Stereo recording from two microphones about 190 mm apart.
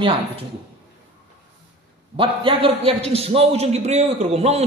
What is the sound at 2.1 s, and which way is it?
A man's voice, 30° right (ahead or behind).